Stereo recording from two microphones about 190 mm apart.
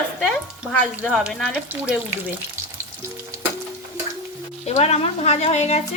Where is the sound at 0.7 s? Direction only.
5° left (ahead or behind).